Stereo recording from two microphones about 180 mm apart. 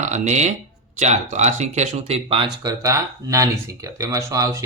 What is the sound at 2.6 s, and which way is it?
Speech, 20° right (ahead or behind).